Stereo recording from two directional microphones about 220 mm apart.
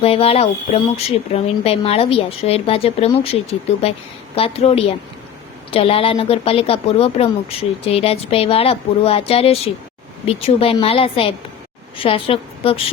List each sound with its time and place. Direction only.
0.0 s a woman's voice: 25° left (ahead or behind)